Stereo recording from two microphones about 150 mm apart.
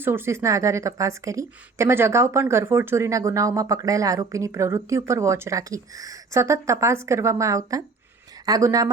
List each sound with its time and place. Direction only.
0.0 s a woman's voice: 15° right (ahead or behind)